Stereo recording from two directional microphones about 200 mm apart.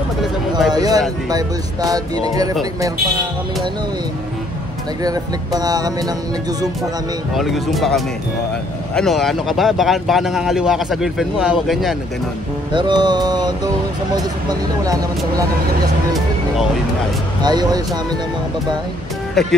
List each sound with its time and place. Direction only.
0.7 s speech: 20° right (ahead or behind)
5.0 s speech: 20° right (ahead or behind)
7.3 s speech: centre (ahead or behind)
12.7 s speech: 20° right (ahead or behind)
17.4 s speech: 20° right (ahead or behind)
19.4 s speech: centre (ahead or behind)